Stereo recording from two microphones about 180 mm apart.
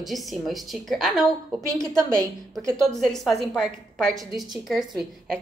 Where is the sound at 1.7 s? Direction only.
15° right (ahead or behind).